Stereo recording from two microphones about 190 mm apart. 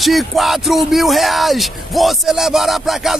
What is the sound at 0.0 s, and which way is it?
Speech, centre (ahead or behind).